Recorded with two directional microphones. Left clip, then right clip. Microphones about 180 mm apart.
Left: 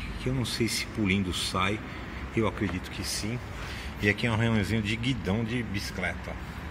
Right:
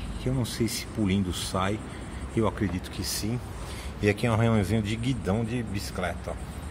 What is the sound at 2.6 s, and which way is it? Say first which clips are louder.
Speech: right 1 dB; 20° right (ahead or behind).